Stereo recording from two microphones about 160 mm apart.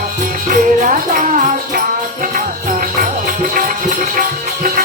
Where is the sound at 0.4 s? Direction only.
55° right (ahead or behind).